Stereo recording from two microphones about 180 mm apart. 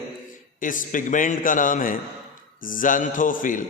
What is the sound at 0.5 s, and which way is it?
A man's voice, 45° left (ahead or behind).